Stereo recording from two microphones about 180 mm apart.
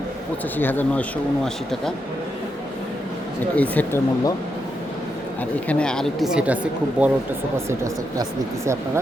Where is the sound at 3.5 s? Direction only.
10° left (ahead or behind).